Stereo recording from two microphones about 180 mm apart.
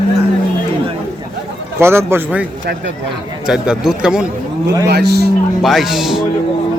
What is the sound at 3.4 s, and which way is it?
Speech, 5° right (ahead or behind).